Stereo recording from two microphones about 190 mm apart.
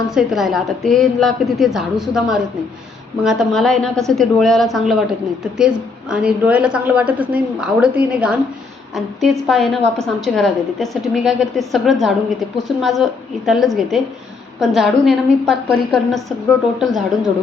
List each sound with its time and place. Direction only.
0.1 s a woman's voice: 5° right (ahead or behind)